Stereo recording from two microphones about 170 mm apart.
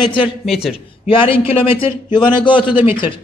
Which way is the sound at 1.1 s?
30° left (ahead or behind).